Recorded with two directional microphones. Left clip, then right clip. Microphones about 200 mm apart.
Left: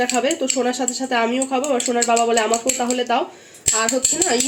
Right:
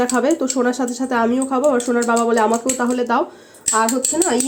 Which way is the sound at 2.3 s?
30° right (ahead or behind).